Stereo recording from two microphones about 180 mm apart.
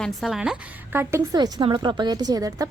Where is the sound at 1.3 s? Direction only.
25° right (ahead or behind).